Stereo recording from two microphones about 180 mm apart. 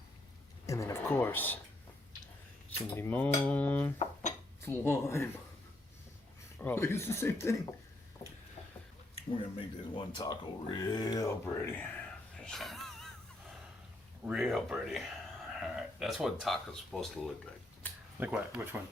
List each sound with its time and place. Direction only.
0.7 s speech: 15° left (ahead or behind)
2.6 s speech: 10° left (ahead or behind)
3.9 s dishes: 40° left (ahead or behind)
4.6 s speech: 10° left (ahead or behind)
6.6 s speech: 15° left (ahead or behind)
9.6 s speech: 25° left (ahead or behind)
12.4 s a sound: 5° left (ahead or behind)
14.3 s speech: 5° right (ahead or behind)